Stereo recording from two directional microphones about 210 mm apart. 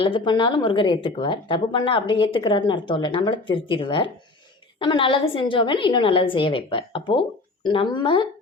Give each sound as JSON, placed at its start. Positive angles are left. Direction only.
{"t": 0.0, "sound": "a woman's voice", "side_deg": 25}